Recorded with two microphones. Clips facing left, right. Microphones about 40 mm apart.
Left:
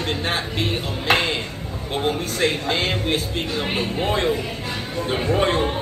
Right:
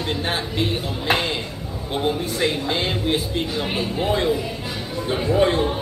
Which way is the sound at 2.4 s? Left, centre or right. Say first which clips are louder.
Left 2 dB; left.